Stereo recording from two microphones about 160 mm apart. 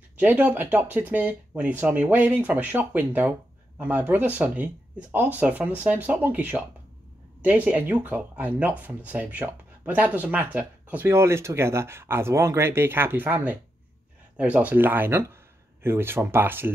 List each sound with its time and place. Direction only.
0.2 s speech: 10° right (ahead or behind)